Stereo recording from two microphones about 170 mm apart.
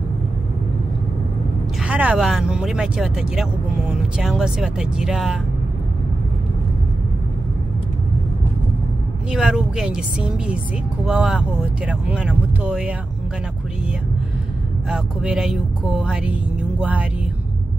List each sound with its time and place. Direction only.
1.8 s speech: 10° right (ahead or behind)
9.3 s speech: centre (ahead or behind)
11.1 s speech: 5° right (ahead or behind)
14.9 s speech: 5° right (ahead or behind)